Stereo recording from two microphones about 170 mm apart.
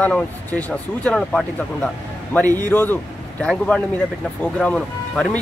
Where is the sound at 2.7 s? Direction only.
10° left (ahead or behind).